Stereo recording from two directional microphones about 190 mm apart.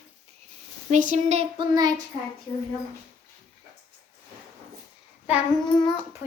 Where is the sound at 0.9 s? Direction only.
40° right (ahead or behind); by 1.9 s 20° right (ahead or behind).